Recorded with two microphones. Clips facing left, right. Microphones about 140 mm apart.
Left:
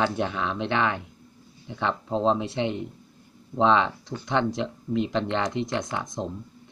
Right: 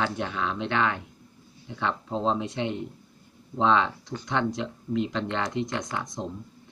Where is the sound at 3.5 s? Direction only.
20° left (ahead or behind).